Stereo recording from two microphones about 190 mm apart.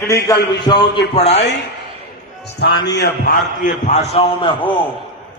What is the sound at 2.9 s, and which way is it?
A man's voice, 50° left (ahead or behind).